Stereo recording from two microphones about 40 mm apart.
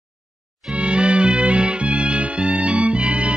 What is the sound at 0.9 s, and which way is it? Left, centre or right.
Music, right.